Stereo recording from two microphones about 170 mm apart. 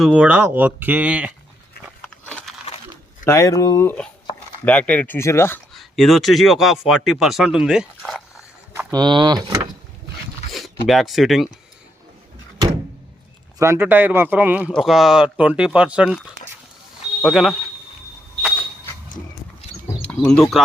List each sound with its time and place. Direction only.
0.0 s speech: 10° right (ahead or behind)
2.0 s biting: 10° left (ahead or behind)
3.2 s speech: 20° left (ahead or behind)
5.7 s speech: centre (ahead or behind)
8.9 s speech: 25° right (ahead or behind)
10.5 s speech: centre (ahead or behind)
13.6 s speech: 15° right (ahead or behind)
20.0 s speech: 5° left (ahead or behind)